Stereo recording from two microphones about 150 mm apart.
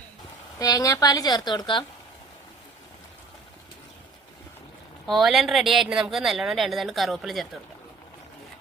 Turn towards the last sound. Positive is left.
turn(degrees=0)  # may be behind; listen again after turning